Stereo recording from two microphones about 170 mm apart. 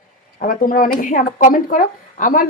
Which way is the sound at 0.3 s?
55° left (ahead or behind).